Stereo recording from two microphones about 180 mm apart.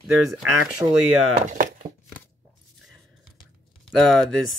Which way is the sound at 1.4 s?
45° right (ahead or behind).